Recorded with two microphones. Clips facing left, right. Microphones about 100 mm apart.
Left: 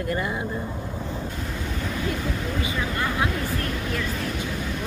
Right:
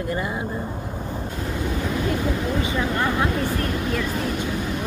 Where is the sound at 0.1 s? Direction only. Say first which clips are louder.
Even; 20° right (ahead or behind).